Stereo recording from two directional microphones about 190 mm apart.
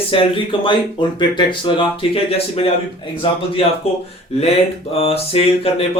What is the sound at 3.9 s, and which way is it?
Speech, 30° left (ahead or behind).